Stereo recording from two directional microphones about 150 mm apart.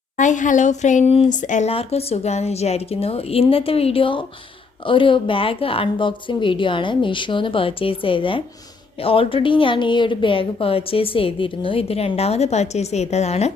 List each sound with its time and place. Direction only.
0.2 s a woman's voice: 55° left (ahead or behind)